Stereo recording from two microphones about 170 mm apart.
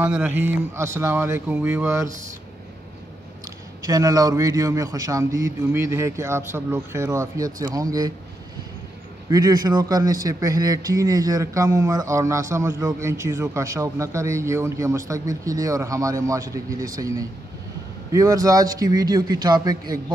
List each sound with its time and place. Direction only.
0.0 s speech: 10° right (ahead or behind)
3.8 s speech: 20° right (ahead or behind)
9.3 s speech: 20° right (ahead or behind)